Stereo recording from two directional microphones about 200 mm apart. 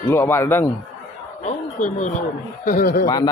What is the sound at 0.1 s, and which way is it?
Speech, 15° left (ahead or behind).